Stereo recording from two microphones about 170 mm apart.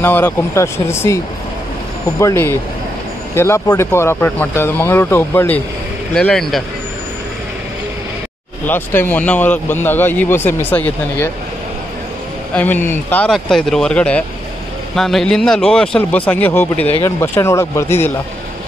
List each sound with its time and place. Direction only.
0.0 s speech: 10° left (ahead or behind)
6.1 s speech: 5° left (ahead or behind)
8.6 s speech: 10° left (ahead or behind)
12.5 s speech: 10° left (ahead or behind)